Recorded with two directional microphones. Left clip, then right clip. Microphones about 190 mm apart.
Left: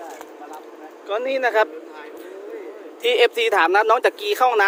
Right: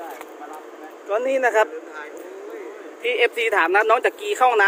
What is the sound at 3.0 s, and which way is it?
Speech, 25° left (ahead or behind).